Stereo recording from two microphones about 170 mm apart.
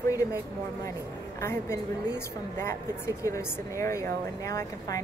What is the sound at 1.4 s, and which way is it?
Speech, 15° left (ahead or behind).